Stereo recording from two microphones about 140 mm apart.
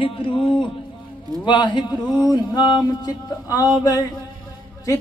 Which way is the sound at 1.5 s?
35° left (ahead or behind).